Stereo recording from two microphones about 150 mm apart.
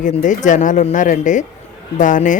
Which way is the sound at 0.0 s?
55° left (ahead or behind).